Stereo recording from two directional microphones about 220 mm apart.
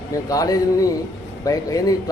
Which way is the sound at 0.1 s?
15° left (ahead or behind).